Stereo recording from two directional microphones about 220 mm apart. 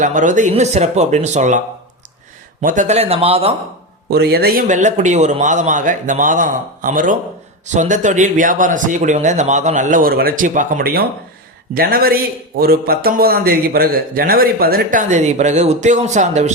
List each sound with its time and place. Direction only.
0.0 s a man's voice: 35° right (ahead or behind)
4.1 s a man's voice: 45° right (ahead or behind)